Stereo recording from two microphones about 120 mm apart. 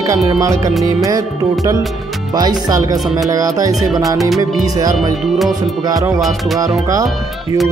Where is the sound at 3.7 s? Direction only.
Centre (ahead or behind).